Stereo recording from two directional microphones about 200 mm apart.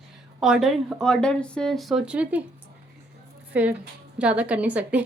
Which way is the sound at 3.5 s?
5° right (ahead or behind).